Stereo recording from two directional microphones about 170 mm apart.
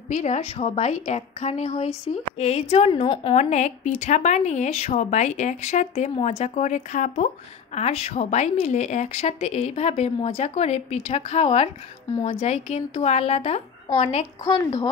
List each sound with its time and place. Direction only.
0.1 s speech: 40° left (ahead or behind)
3.4 s speech: 45° left (ahead or behind)
14.4 s a woman's voice: 25° left (ahead or behind)